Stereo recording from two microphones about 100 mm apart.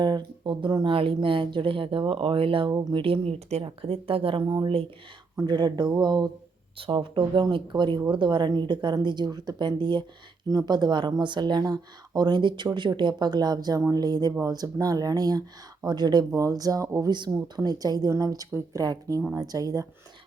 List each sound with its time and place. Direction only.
0.0 s speech: 50° right (ahead or behind)
0.9 s speech: 60° right (ahead or behind)
5.4 s speech: 45° right (ahead or behind)
6.7 s speech: 60° right (ahead or behind)
10.5 s speech: 40° right (ahead or behind)
17.1 s speech: 45° right (ahead or behind)